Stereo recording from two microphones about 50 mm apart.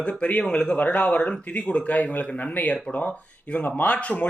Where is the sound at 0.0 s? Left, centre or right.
Left.